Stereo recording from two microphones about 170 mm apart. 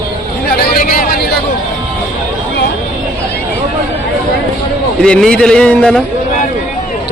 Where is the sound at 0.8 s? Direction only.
60° left (ahead or behind).